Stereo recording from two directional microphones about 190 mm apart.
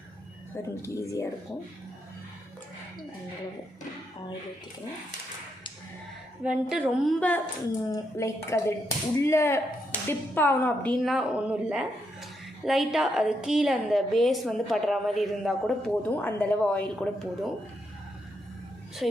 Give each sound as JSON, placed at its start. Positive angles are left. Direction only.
{"t": 0.5, "sound": "speech", "side_deg": 15}
{"t": 6.4, "sound": "a woman's voice", "side_deg": -5}
{"t": 19.0, "sound": "a woman's voice", "side_deg": 0}